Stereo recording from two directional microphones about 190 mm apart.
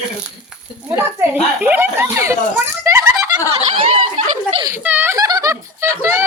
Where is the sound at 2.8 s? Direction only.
15° right (ahead or behind).